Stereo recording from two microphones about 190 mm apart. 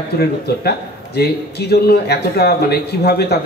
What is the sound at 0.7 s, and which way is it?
A man's voice, 55° left (ahead or behind).